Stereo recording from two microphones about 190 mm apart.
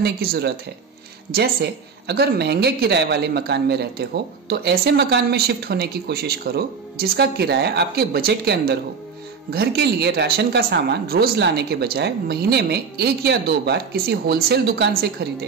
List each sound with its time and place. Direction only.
0.0 s speech: 55° right (ahead or behind)